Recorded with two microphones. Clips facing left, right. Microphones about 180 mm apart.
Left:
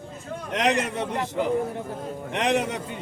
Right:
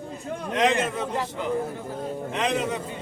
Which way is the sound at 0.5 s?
75° left (ahead or behind).